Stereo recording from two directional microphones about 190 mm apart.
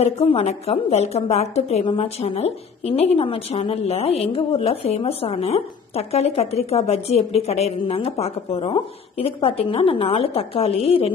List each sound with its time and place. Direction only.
0.0 s a woman's voice: 30° left (ahead or behind)